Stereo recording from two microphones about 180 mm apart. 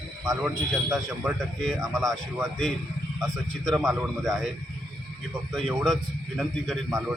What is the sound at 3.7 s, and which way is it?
Speech, centre (ahead or behind).